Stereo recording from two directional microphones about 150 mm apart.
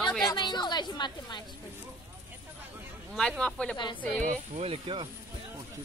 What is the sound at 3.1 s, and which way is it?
Speech, 5° left (ahead or behind).